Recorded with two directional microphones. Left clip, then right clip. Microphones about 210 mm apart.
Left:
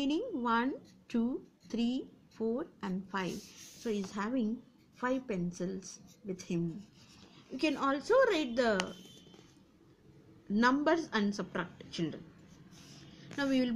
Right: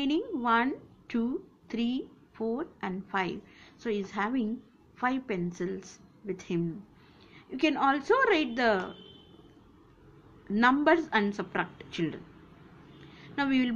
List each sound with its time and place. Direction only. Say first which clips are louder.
0.0 s a woman's voice: right 4 dB; 25° left (ahead or behind)
10.5 s a woman's voice: right 5 dB; 20° left (ahead or behind)
13.4 s a woman's voice: right 4 dB; 15° left (ahead or behind)